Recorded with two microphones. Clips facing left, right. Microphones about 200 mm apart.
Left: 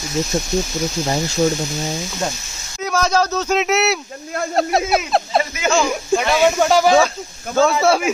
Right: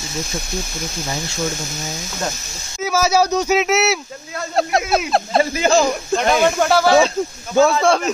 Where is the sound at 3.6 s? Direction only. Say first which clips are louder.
Even; centre (ahead or behind).